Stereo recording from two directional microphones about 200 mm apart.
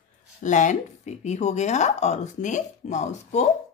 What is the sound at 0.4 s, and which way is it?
Speech, 40° left (ahead or behind).